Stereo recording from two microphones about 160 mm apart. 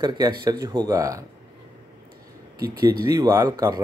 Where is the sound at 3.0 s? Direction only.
20° right (ahead or behind).